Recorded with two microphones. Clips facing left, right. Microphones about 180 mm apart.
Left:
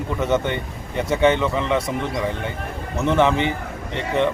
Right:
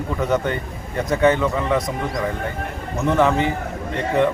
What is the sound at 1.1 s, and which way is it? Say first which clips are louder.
Speech: right 1 dB; 25° left (ahead or behind).